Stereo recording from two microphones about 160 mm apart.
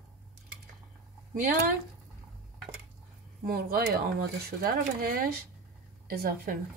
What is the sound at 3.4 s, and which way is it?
Speech, 70° right (ahead or behind).